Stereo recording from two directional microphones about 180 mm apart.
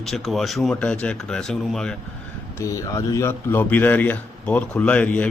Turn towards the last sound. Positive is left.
turn(degrees=5)  # may be behind; listen again after turning